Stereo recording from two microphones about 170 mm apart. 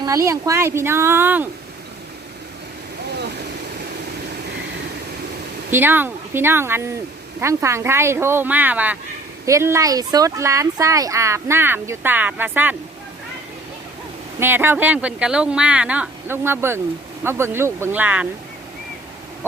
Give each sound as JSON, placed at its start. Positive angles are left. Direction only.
{"t": 0.0, "sound": "speech", "side_deg": -20}
{"t": 5.7, "sound": "speech", "side_deg": -10}
{"t": 14.3, "sound": "speech", "side_deg": -15}